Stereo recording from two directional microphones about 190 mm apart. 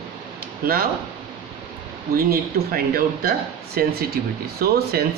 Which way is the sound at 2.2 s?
50° right (ahead or behind).